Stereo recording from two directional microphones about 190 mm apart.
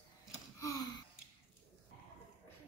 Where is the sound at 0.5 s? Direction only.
20° left (ahead or behind).